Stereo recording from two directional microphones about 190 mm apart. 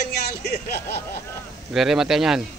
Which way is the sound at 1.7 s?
5° right (ahead or behind).